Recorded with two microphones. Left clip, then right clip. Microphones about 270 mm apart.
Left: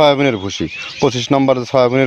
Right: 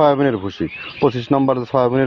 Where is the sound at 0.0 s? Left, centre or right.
Left.